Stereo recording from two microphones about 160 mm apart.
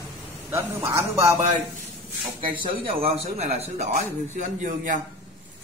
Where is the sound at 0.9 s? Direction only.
15° right (ahead or behind).